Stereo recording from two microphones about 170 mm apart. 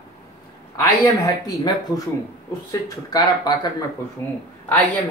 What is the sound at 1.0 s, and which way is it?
A man's voice, 20° left (ahead or behind).